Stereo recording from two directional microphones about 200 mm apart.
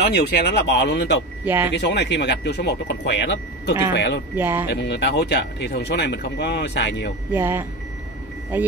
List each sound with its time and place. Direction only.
0.0 s speech: 55° left (ahead or behind)
1.4 s speech: 10° right (ahead or behind)
1.7 s speech: 60° left (ahead or behind)
4.4 s speech: 10° right (ahead or behind)
4.6 s speech: 60° left (ahead or behind)
7.3 s speech: 10° right (ahead or behind)